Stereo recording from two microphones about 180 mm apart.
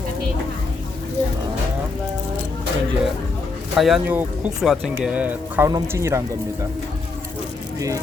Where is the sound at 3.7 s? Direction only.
Centre (ahead or behind).